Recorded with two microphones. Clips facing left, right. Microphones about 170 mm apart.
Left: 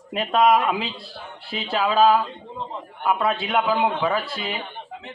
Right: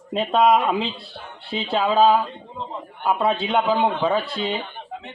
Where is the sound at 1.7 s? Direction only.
20° right (ahead or behind).